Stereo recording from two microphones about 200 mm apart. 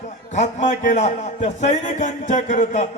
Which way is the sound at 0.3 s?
35° left (ahead or behind).